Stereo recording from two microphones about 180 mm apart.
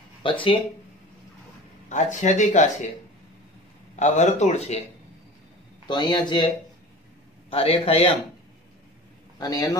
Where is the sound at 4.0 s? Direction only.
40° left (ahead or behind).